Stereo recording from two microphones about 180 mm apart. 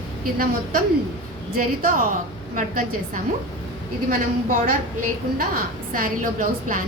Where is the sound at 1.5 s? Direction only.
50° right (ahead or behind).